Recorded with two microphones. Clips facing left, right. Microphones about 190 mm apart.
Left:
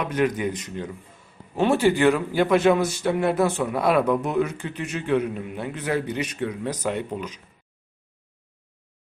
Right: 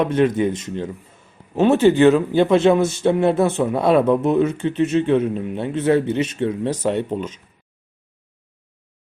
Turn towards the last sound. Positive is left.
turn(degrees=-25)  # may be behind; listen again after turning